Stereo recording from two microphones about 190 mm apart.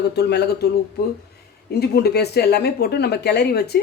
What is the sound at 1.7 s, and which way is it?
Speech, 60° left (ahead or behind).